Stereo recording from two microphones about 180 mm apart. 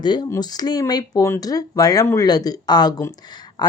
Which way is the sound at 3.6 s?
20° left (ahead or behind).